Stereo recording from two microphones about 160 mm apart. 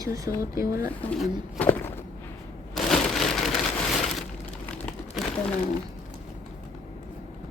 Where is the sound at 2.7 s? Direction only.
5° left (ahead or behind).